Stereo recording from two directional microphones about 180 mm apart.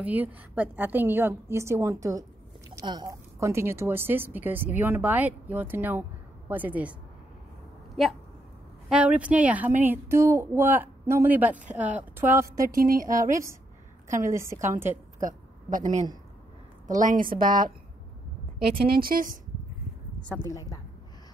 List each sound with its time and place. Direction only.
0.0 s a woman's voice: 10° right (ahead or behind)
12.4 s a woman's voice: 50° right (ahead or behind)
13.3 s a woman's voice: 15° right (ahead or behind)
14.9 s a woman's voice: 45° right (ahead or behind)
18.9 s a woman's voice: 55° right (ahead or behind)
20.2 s a woman's voice: 10° left (ahead or behind)